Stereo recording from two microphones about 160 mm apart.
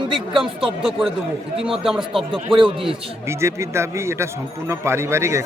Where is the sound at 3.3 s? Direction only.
15° right (ahead or behind).